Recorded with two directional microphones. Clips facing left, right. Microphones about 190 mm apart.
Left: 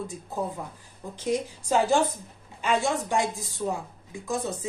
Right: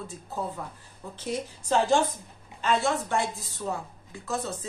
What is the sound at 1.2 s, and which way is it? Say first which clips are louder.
A woman's voice: left 5 dB; 10° left (ahead or behind).